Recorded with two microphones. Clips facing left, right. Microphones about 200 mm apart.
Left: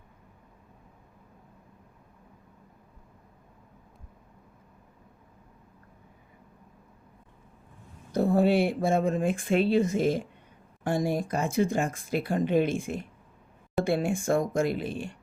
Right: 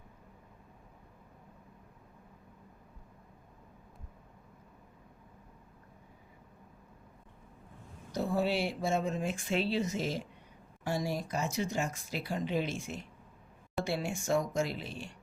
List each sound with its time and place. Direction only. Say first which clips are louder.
8.1 s speech: left 8 dB; 55° left (ahead or behind)